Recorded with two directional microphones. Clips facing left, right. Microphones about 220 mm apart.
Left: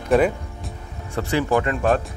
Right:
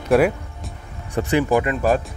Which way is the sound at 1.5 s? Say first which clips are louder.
Left 1 dB; centre (ahead or behind).